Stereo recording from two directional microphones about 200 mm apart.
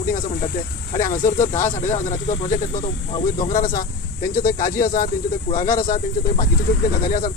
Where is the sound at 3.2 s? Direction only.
45° left (ahead or behind).